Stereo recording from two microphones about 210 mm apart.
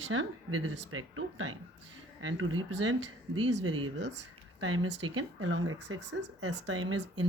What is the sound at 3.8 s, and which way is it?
Speech, 60° right (ahead or behind).